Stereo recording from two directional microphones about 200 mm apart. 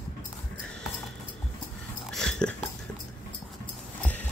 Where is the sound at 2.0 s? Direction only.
5° left (ahead or behind).